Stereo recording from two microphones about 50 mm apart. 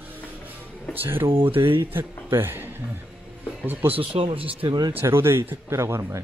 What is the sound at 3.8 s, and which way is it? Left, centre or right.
Speech, right.